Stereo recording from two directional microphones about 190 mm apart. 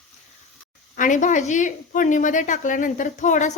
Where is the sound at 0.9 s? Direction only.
40° left (ahead or behind).